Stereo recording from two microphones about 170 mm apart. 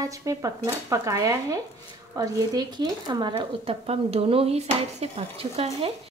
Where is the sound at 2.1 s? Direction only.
20° right (ahead or behind).